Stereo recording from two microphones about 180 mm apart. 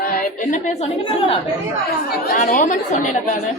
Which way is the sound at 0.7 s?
35° left (ahead or behind).